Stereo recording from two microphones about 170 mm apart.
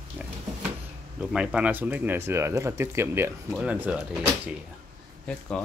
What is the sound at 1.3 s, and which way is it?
Speech, 5° right (ahead or behind).